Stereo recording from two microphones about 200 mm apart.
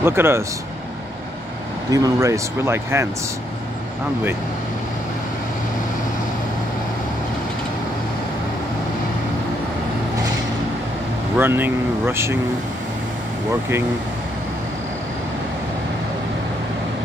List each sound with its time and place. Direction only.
0.0 s speech: 10° right (ahead or behind)
1.9 s speech: 20° right (ahead or behind)
11.3 s speech: 10° right (ahead or behind)
13.5 s speech: 10° right (ahead or behind)